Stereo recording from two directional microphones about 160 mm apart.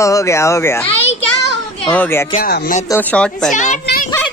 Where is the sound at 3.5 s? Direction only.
50° left (ahead or behind).